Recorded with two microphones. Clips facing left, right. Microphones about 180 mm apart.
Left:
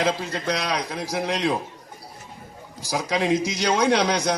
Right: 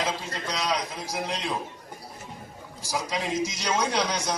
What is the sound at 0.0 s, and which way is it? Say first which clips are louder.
A man's voice: left 6 dB; 60° left (ahead or behind).